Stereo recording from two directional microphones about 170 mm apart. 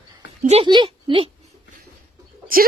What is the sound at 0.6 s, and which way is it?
Speech, 25° right (ahead or behind).